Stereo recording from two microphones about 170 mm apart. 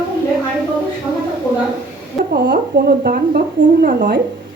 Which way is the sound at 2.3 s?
65° right (ahead or behind).